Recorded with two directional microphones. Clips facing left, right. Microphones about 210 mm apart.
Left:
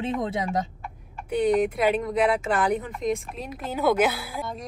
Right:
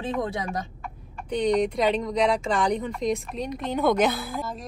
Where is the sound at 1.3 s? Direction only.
5° left (ahead or behind).